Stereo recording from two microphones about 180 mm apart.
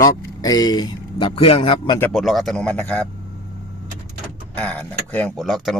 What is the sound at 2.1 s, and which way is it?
Speech, centre (ahead or behind).